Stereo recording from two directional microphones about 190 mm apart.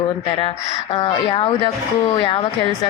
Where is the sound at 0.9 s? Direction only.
25° left (ahead or behind).